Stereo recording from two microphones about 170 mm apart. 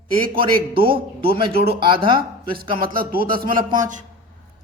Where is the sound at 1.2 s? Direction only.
65° right (ahead or behind).